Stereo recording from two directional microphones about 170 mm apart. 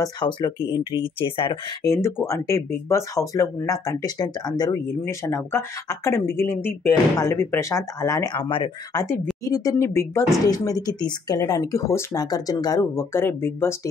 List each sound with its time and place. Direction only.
0.9 s speech: 30° left (ahead or behind)
1.9 s speech: 15° left (ahead or behind)
9.0 s speech: 15° left (ahead or behind)